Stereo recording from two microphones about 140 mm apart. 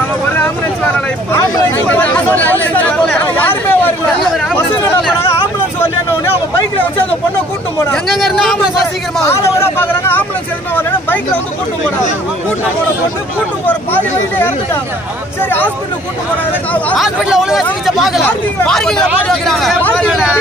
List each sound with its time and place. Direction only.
1.9 s chatter: 10° left (ahead or behind)
4.3 s chatter: centre (ahead or behind)
7.9 s speech: centre (ahead or behind)
9.2 s speech: 20° left (ahead or behind)
17.0 s speech: 5° right (ahead or behind)
20.1 s speech: 5° right (ahead or behind)